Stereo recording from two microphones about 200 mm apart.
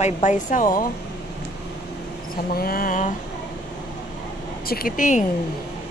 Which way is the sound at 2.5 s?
45° left (ahead or behind).